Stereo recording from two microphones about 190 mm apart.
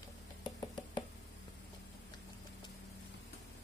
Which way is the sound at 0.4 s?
20° left (ahead or behind).